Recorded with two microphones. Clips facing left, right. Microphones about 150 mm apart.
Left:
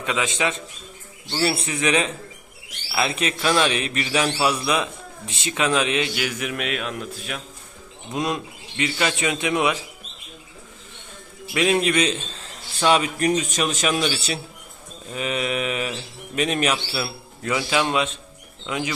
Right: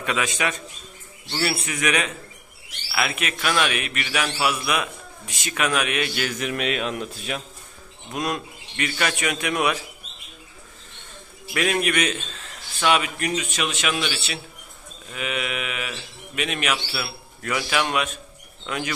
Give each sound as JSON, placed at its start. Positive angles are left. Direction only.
{"t": 0.0, "sound": "a man's voice", "side_deg": 20}
{"t": 6.5, "sound": "speech", "side_deg": 0}
{"t": 8.1, "sound": "a man's voice", "side_deg": 20}
{"t": 11.5, "sound": "a man's voice", "side_deg": 20}